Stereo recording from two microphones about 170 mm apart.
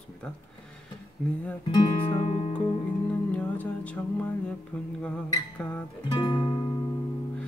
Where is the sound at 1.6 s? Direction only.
25° left (ahead or behind).